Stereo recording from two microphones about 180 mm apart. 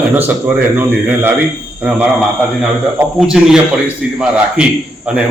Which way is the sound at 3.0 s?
5° right (ahead or behind).